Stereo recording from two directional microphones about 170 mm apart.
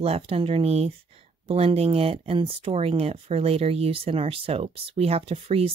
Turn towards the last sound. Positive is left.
turn(degrees=-35)  # may be behind; listen again after turning